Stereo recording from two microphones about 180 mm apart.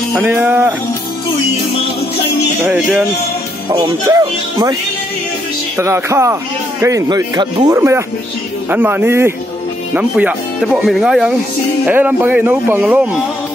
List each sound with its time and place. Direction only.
0.1 s speech: 10° right (ahead or behind)
2.6 s speech: 10° right (ahead or behind)
5.8 s speech: 15° right (ahead or behind)